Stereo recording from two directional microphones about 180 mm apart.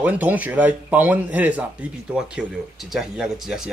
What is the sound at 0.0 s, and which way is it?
Speech, 10° right (ahead or behind).